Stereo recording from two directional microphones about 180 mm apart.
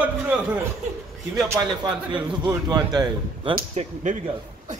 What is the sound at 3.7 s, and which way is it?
Speech, 40° right (ahead or behind).